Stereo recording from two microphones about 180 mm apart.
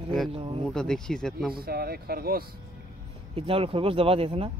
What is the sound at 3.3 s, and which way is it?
Speech, 30° right (ahead or behind).